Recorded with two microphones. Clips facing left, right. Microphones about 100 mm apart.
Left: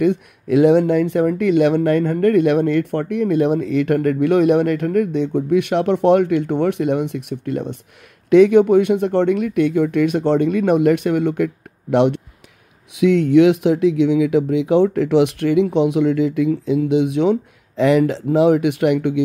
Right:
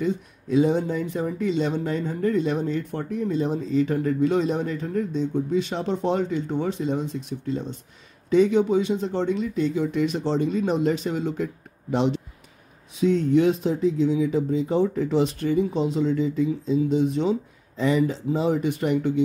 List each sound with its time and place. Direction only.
0.0 s speech: 70° left (ahead or behind)